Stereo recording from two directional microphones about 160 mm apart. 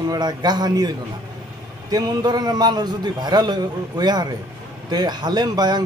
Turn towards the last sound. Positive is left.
turn(degrees=-25)  # may be behind; listen again after turning